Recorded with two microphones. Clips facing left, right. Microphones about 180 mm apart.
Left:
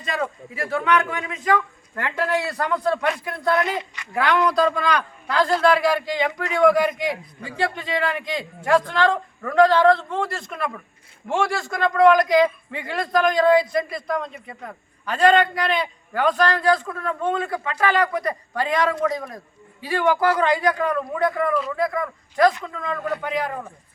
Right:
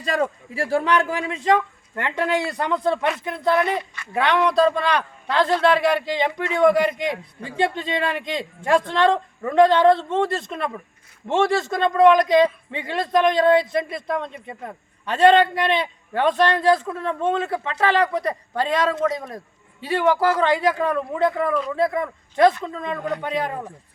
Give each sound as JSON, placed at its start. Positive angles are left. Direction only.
{"t": 0.0, "sound": "a man's voice", "side_deg": -35}
{"t": 21.4, "sound": "a man's voice", "side_deg": 0}
{"t": 21.8, "sound": "a man's voice", "side_deg": -25}